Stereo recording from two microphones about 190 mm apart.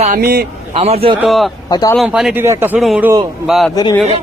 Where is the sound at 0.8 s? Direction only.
30° right (ahead or behind).